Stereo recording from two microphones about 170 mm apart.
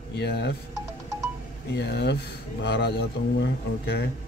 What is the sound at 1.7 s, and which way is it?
Speech, 75° left (ahead or behind).